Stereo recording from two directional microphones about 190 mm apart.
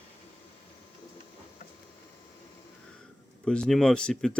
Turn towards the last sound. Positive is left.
turn(degrees=5)  # may be behind; listen again after turning